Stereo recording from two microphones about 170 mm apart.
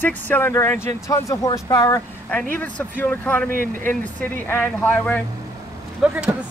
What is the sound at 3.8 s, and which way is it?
Speech, 10° left (ahead or behind).